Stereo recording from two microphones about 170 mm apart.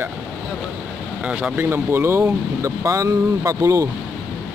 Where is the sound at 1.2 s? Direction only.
5° right (ahead or behind).